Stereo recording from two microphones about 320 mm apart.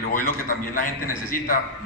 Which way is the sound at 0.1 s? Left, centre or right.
Left.